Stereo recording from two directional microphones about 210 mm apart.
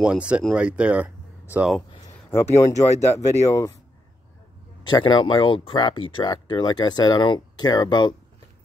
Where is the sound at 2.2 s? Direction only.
10° left (ahead or behind).